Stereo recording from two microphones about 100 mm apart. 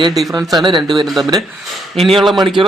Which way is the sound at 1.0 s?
Centre (ahead or behind).